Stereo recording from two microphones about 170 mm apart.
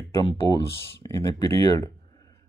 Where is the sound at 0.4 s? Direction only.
20° left (ahead or behind).